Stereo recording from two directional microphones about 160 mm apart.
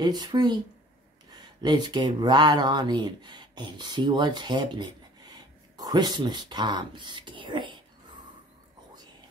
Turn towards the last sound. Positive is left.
turn(degrees=-30)  # may be behind; listen again after turning